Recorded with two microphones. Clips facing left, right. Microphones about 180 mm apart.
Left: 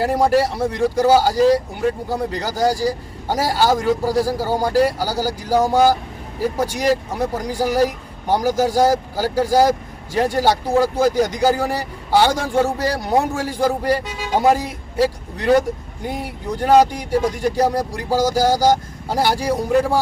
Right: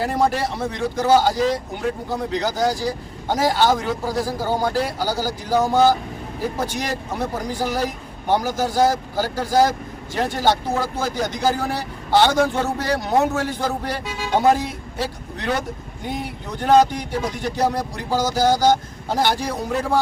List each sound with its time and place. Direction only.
0.0 s speech: 10° left (ahead or behind)